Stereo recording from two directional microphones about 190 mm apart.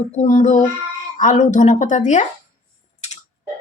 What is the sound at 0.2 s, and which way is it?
A woman's voice, 35° left (ahead or behind).